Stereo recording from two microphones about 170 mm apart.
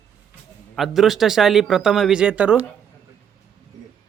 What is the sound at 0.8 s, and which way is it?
Speech, centre (ahead or behind).